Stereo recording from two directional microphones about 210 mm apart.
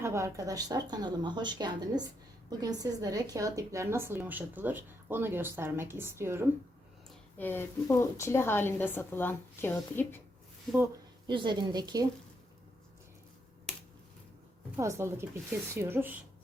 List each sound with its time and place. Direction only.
0.0 s a woman's voice: 15° right (ahead or behind)
7.3 s a woman's voice: 10° left (ahead or behind)
11.3 s speech: 25° right (ahead or behind)
14.8 s a woman's voice: 15° right (ahead or behind)